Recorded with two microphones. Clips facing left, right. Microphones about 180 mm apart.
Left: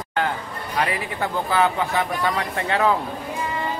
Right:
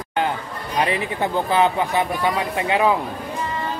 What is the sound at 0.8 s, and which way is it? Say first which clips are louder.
Speech: right 3 dB; 20° right (ahead or behind).